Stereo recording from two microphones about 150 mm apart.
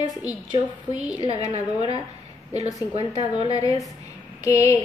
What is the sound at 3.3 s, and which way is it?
Speech, 25° left (ahead or behind).